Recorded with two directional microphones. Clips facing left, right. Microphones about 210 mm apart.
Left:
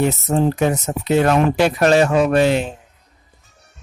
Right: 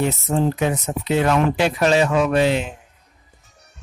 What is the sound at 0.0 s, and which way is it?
Speech, 45° left (ahead or behind).